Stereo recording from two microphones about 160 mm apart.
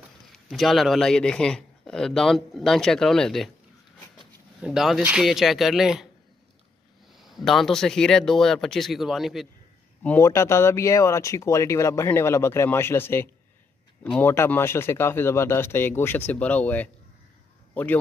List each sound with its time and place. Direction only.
0.5 s speech: centre (ahead or behind)
4.6 s speech: 5° right (ahead or behind)
7.2 s speech: centre (ahead or behind)
10.0 s speech: 15° left (ahead or behind)